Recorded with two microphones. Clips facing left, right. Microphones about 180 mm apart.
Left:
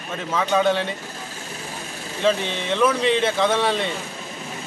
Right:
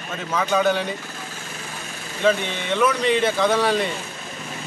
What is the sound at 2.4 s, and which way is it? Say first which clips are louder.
Speech: left 1 dB; 30° left (ahead or behind).